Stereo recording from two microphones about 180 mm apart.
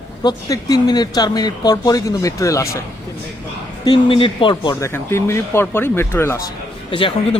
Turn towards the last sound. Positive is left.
turn(degrees=30)  # may be behind; listen again after turning